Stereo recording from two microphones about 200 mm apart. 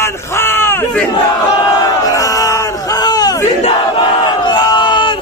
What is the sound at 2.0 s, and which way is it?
Battle cry, 15° left (ahead or behind).